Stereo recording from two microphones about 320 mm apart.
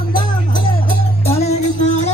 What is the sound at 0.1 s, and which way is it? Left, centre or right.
Music, centre.